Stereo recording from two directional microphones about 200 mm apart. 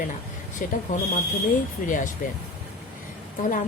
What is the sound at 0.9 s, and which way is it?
Speech, 35° left (ahead or behind).